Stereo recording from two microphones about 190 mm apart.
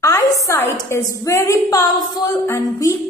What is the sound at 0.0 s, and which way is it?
A woman's voice, 15° left (ahead or behind).